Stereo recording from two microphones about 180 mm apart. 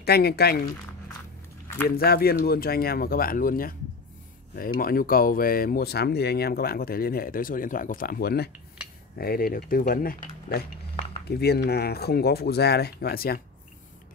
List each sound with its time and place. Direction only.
0.0 s speech: 60° left (ahead or behind)
2.0 s speech: 60° left (ahead or behind)